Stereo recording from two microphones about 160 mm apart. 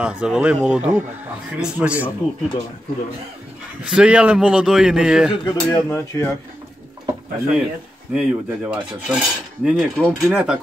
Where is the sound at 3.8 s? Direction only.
5° right (ahead or behind).